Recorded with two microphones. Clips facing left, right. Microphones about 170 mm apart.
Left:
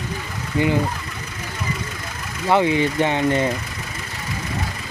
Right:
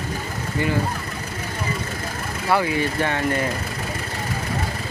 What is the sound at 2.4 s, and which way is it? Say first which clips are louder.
Speech: left 4 dB; 20° left (ahead or behind).